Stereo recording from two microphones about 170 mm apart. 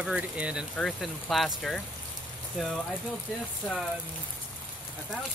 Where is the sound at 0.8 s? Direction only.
5° left (ahead or behind).